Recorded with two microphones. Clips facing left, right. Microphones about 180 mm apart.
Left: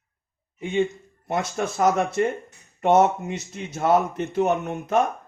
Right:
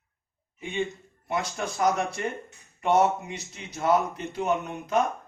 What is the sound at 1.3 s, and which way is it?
Speech, 50° left (ahead or behind).